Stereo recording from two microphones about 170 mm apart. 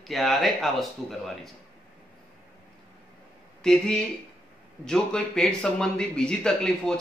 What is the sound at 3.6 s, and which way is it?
A man's voice, 5° left (ahead or behind).